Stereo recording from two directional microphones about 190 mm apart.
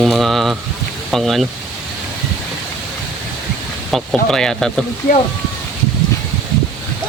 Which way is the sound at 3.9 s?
Centre (ahead or behind).